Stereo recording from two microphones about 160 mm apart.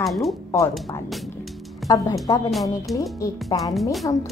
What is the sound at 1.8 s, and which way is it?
Speech, 20° left (ahead or behind).